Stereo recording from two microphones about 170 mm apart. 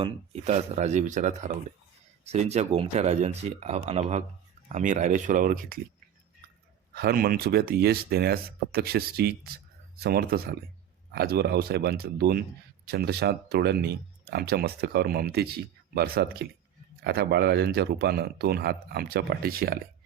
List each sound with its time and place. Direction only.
0.0 s speech: 40° right (ahead or behind); by 5.8 s 55° right (ahead or behind)
6.9 s speech: 65° right (ahead or behind)